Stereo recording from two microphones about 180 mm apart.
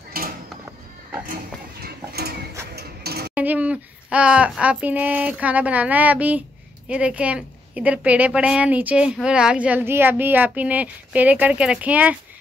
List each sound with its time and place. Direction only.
0.2 s music: 55° right (ahead or behind)
1.3 s a sound: 60° right (ahead or behind)
3.3 s a woman's voice: 10° right (ahead or behind)